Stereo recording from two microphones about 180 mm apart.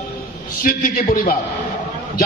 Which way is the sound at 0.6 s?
55° left (ahead or behind).